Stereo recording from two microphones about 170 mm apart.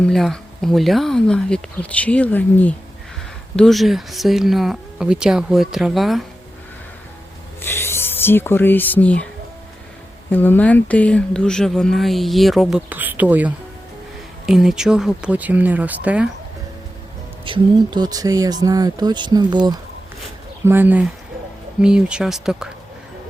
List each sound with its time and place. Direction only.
0.0 s speech: centre (ahead or behind)
7.6 s speech: 15° left (ahead or behind)
10.3 s speech: 10° left (ahead or behind)
12.9 s speech: 10° right (ahead or behind)
17.4 s speech: 30° right (ahead or behind)
20.7 s speech: 10° right (ahead or behind)